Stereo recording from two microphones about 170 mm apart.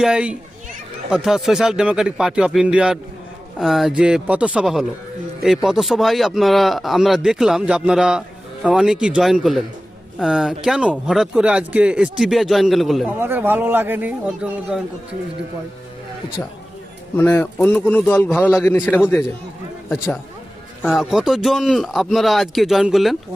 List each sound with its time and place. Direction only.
0.0 s a man's voice: 5° right (ahead or behind)
13.1 s speech: 15° right (ahead or behind)
17.2 s a man's voice: 10° left (ahead or behind)
20.8 s a man's voice: centre (ahead or behind)